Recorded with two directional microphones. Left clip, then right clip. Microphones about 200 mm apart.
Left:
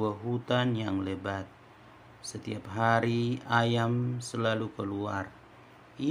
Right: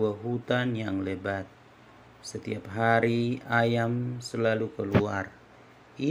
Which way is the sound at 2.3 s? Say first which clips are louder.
Right 4 dB; 5° right (ahead or behind).